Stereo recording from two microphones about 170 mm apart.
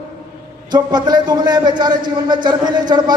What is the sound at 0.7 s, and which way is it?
A man's voice, 25° right (ahead or behind).